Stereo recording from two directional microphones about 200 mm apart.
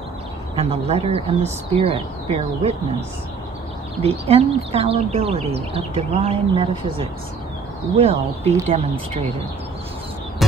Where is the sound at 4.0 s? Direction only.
30° right (ahead or behind).